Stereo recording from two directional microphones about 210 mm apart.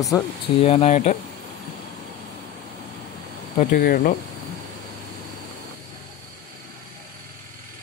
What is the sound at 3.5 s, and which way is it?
Speech, 40° left (ahead or behind).